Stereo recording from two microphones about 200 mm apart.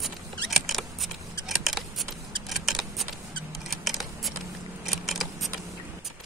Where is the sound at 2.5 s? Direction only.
Centre (ahead or behind).